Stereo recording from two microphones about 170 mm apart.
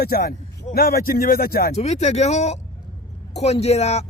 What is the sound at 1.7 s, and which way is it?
Speech, 40° left (ahead or behind).